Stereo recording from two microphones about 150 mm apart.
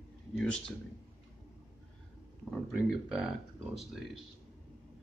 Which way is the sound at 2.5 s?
Centre (ahead or behind).